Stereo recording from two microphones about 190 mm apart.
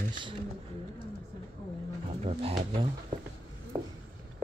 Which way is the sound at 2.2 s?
35° right (ahead or behind).